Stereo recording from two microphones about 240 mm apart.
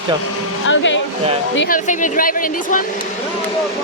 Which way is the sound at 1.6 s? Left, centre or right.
Left.